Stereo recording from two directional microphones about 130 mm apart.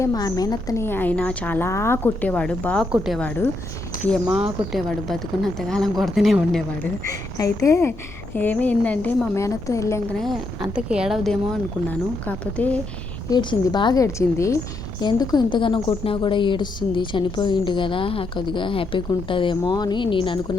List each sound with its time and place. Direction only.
0.0 s a woman's voice: 30° left (ahead or behind); by 2.8 s 10° left (ahead or behind)
2.9 s a woman's voice: 5° right (ahead or behind)
3.2 s a woman's voice: 10° left (ahead or behind)
3.9 s a sound: 90° left
4.7 s a woman's voice: centre (ahead or behind)
7.3 s a woman's voice: 25° left (ahead or behind)
10.1 s a woman's voice: centre (ahead or behind)
11.9 s a woman's voice: 10° left (ahead or behind)
13.3 s a woman's voice: 35° left (ahead or behind)